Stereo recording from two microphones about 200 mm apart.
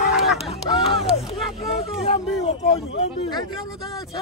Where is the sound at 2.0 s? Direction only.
30° left (ahead or behind).